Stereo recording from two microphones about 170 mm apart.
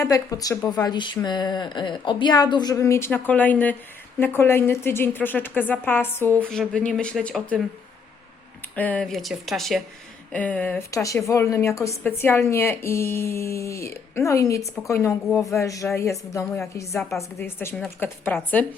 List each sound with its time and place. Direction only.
0.0 s a woman's voice: 20° left (ahead or behind)
8.7 s a woman's voice: 10° left (ahead or behind)